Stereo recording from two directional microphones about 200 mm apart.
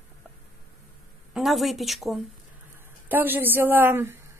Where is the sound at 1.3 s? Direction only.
Centre (ahead or behind).